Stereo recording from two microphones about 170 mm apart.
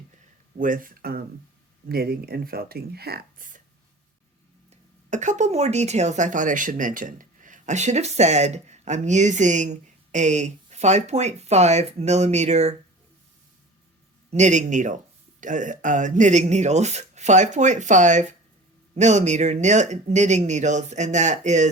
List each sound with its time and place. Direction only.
0.5 s speech: 50° right (ahead or behind)
4.7 s speech: 45° right (ahead or behind)
14.3 s speech: 45° right (ahead or behind)